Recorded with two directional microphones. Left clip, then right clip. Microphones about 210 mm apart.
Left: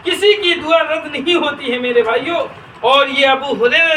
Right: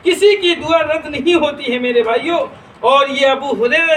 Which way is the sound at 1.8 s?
20° right (ahead or behind).